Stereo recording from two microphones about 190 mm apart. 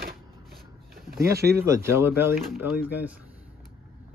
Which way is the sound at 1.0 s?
50° right (ahead or behind).